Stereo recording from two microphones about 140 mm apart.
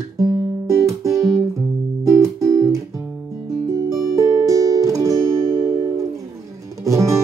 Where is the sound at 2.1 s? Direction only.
20° right (ahead or behind).